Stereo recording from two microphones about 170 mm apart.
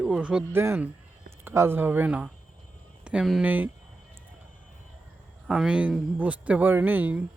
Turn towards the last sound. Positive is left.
turn(degrees=-10)  # may be behind; listen again after turning